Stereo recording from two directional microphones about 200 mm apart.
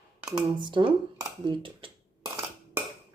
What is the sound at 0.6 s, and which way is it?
Speech, 25° right (ahead or behind).